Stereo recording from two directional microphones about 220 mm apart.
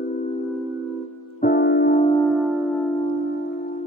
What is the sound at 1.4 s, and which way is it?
Music, 50° left (ahead or behind).